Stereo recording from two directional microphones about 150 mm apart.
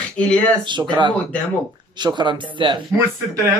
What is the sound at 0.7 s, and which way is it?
Speech, 30° right (ahead or behind).